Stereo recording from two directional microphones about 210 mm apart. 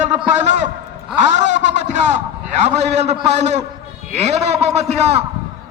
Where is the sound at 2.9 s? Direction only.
30° right (ahead or behind).